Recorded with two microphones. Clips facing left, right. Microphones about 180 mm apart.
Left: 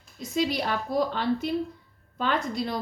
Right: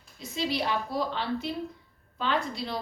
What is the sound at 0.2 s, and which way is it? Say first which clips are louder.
A woman's voice: left 3 dB; 45° left (ahead or behind).